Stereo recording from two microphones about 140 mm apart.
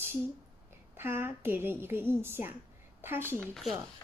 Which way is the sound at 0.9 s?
15° right (ahead or behind).